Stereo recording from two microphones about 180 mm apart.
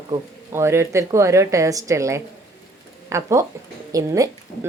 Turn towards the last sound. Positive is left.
turn(degrees=-20)  # may be behind; listen again after turning